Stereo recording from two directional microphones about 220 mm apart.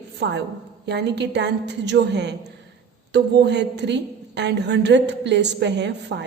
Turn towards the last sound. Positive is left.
turn(degrees=-50)  # may be behind; listen again after turning